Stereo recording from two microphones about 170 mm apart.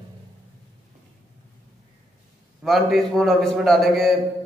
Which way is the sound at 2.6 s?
Centre (ahead or behind).